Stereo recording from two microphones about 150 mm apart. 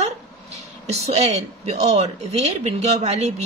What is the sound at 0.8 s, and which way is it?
Speech, 45° right (ahead or behind).